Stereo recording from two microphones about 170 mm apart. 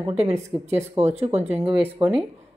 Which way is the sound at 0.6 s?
40° right (ahead or behind).